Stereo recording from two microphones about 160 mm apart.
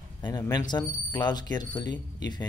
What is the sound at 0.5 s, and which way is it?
Speech, 25° left (ahead or behind).